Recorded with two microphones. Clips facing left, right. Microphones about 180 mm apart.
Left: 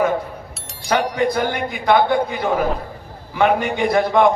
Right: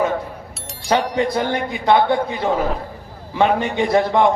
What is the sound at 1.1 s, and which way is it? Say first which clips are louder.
A man's voice: even; 25° right (ahead or behind).